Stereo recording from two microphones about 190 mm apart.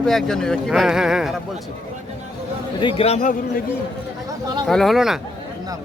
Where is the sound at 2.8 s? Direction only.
35° left (ahead or behind).